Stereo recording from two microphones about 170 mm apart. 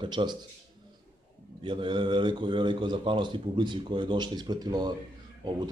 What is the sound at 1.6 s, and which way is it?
Speech, 30° right (ahead or behind).